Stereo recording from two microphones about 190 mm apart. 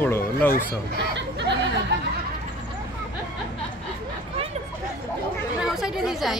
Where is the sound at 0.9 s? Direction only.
65° right (ahead or behind).